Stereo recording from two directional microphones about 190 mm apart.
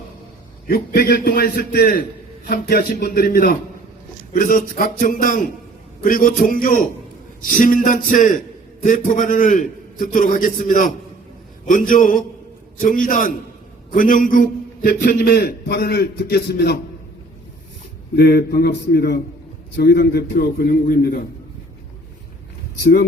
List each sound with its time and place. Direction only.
0.7 s a man's voice: 50° left (ahead or behind)
18.2 s a man's voice: 55° left (ahead or behind)
22.8 s a man's voice: 50° left (ahead or behind)